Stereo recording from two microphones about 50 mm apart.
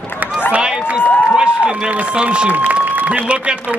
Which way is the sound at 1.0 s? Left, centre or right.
Left.